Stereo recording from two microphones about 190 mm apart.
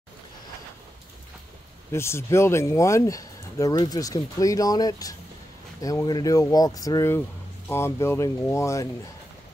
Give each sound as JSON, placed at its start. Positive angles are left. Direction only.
{"t": 1.9, "sound": "speech", "side_deg": 15}